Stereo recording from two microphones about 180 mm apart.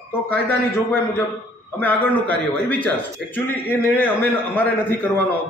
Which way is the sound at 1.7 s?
10° left (ahead or behind).